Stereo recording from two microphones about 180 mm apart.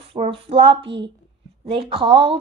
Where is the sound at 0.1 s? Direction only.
30° right (ahead or behind).